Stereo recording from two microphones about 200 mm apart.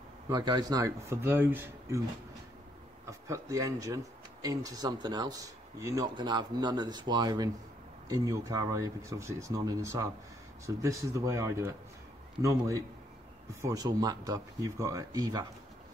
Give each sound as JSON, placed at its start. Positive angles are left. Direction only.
{"t": 0.3, "sound": "speech", "side_deg": -20}
{"t": 3.1, "sound": "speech", "side_deg": -15}